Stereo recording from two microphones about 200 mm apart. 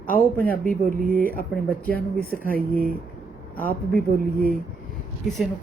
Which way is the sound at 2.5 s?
45° right (ahead or behind).